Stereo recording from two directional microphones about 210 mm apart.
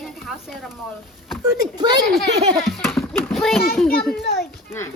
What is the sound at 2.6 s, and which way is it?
Speech, centre (ahead or behind).